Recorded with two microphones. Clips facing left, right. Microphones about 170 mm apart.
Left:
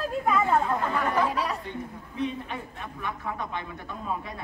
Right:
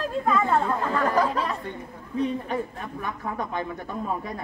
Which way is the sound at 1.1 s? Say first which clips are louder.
Right 2 dB; 40° right (ahead or behind).